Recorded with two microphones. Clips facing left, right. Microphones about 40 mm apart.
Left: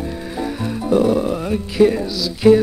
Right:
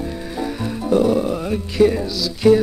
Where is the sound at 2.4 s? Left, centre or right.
Left.